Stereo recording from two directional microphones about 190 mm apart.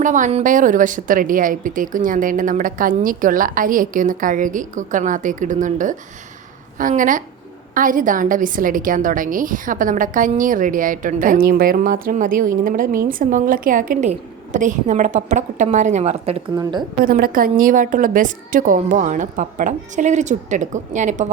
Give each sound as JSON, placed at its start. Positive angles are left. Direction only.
{"t": 0.0, "sound": "a woman's voice", "side_deg": -40}
{"t": 17.0, "sound": "a woman's voice", "side_deg": -50}